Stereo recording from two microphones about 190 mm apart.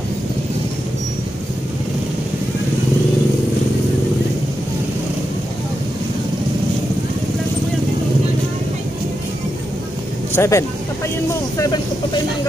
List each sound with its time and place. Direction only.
10.3 s speech: 15° left (ahead or behind)